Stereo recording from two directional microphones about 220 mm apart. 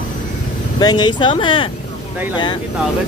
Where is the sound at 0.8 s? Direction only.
20° left (ahead or behind).